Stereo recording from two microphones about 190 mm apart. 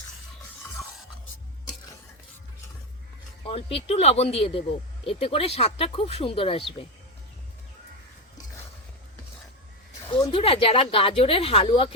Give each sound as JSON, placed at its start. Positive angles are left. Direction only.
{"t": 3.4, "sound": "speech", "side_deg": 30}
{"t": 10.1, "sound": "speech", "side_deg": 25}